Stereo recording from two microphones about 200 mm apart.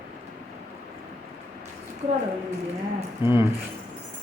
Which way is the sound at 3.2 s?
25° left (ahead or behind).